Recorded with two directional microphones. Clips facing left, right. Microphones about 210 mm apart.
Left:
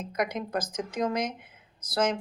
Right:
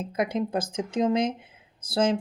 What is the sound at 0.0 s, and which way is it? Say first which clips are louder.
Speech: right 4 dB; 30° right (ahead or behind).